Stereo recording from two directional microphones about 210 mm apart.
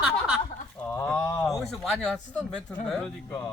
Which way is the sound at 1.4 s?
Centre (ahead or behind).